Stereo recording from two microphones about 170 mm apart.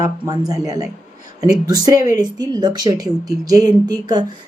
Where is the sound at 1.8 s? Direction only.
20° right (ahead or behind).